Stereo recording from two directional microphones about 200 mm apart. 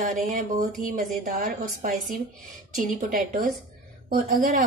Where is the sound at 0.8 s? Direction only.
40° right (ahead or behind).